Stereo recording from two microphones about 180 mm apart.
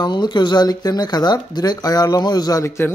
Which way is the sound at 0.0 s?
25° left (ahead or behind).